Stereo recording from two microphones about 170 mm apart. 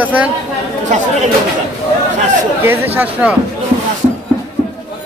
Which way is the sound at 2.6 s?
15° right (ahead or behind).